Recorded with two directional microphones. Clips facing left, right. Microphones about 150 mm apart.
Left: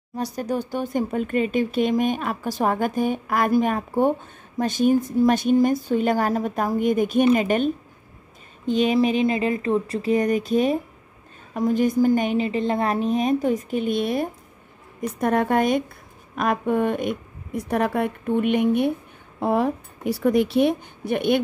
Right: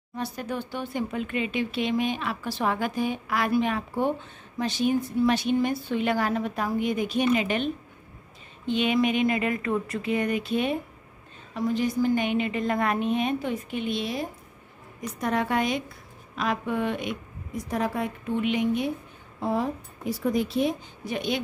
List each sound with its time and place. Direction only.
0.1 s a woman's voice: 40° left (ahead or behind); by 21.4 s 60° left (ahead or behind)